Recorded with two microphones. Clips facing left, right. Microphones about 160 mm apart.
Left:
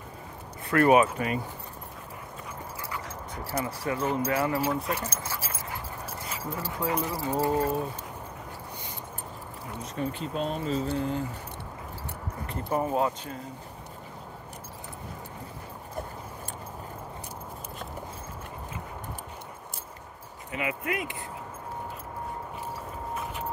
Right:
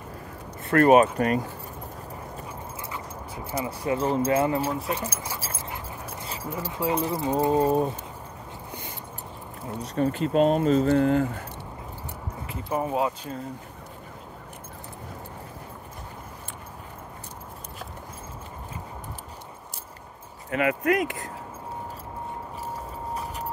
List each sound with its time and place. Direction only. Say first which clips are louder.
0.7 s speech: right 3 dB; 30° right (ahead or behind)
1.1 s speech: right 6 dB; 45° right (ahead or behind)
3.6 s speech: right 4 dB; 15° right (ahead or behind)
4.0 s mantra: right 4 dB; 30° right (ahead or behind)
4.9 s speech: right 2 dB; 15° right (ahead or behind)
5.4 s dog: right 1 dB; 25° right (ahead or behind)
6.5 s speech: right 3 dB; 10° right (ahead or behind)
6.9 s mantra: right 5 dB; 25° right (ahead or behind)
9.9 s speech: right 7 dB; 50° right (ahead or behind)
10.2 s speech: right 13 dB; 75° right (ahead or behind)
12.6 s speech: right 1 dB; 10° right (ahead or behind)
20.5 s speech: right 8 dB; 60° right (ahead or behind)